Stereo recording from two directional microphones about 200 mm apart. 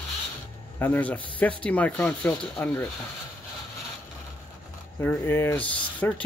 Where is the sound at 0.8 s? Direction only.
10° left (ahead or behind).